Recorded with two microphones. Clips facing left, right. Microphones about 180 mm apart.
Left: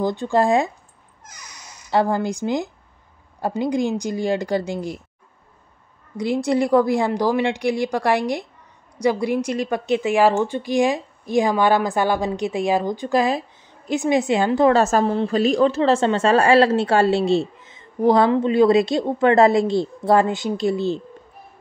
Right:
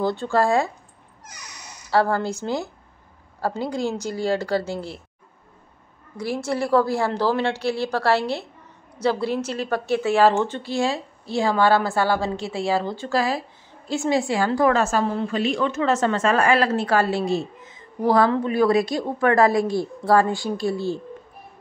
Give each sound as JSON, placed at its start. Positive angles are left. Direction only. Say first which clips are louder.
{"t": 0.0, "sound": "a woman's voice", "louder": "left 2 dB", "side_deg": 15}
{"t": 1.9, "sound": "a woman's voice", "louder": "left 1 dB", "side_deg": 15}
{"t": 6.1, "sound": "a woman's voice", "louder": "left 5 dB", "side_deg": 20}
{"t": 14.8, "sound": "a woman's voice", "louder": "left 4 dB", "side_deg": 40}